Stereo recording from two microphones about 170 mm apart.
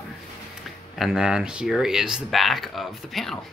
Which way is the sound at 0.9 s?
Centre (ahead or behind).